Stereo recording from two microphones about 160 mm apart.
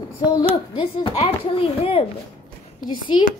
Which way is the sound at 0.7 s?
35° left (ahead or behind).